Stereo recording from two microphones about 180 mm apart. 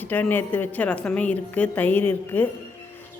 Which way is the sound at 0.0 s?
10° left (ahead or behind).